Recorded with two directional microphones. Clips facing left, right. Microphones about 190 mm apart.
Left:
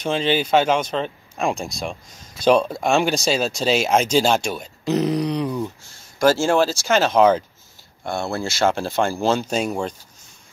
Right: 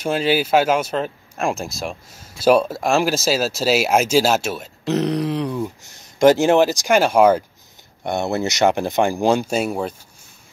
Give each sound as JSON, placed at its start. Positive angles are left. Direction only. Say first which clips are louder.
{"t": 0.0, "sound": "speech", "louder": "right 2 dB", "side_deg": -10}
{"t": 6.1, "sound": "speech", "louder": "right 4 dB", "side_deg": -20}
{"t": 8.0, "sound": "speech", "louder": "right 4 dB", "side_deg": -20}